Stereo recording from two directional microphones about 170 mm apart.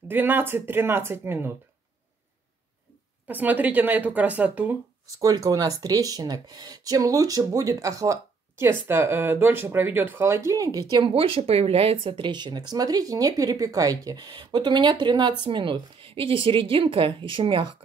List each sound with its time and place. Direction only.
0.1 s speech: 10° right (ahead or behind)
3.3 s speech: 10° right (ahead or behind)
5.0 s a woman's voice: 20° right (ahead or behind)